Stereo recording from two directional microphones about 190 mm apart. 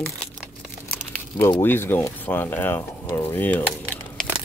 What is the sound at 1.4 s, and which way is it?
Speech, 10° left (ahead or behind).